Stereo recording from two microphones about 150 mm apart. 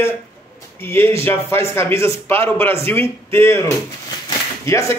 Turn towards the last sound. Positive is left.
turn(degrees=20)  # may be behind; listen again after turning